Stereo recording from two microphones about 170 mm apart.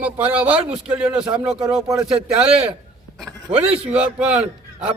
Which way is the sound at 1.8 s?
20° right (ahead or behind).